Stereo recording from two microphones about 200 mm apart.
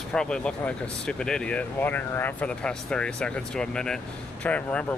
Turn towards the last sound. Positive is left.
turn(degrees=5)  # may be behind; listen again after turning